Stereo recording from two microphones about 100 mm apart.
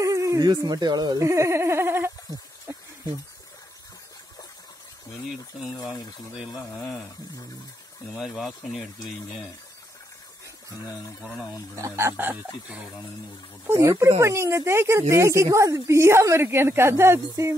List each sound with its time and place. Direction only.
0.0 s speech: 35° right (ahead or behind)
8.2 s speech: centre (ahead or behind)
11.7 s speech: 30° right (ahead or behind)